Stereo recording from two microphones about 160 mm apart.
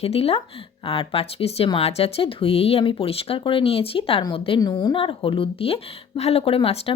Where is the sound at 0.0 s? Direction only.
40° left (ahead or behind).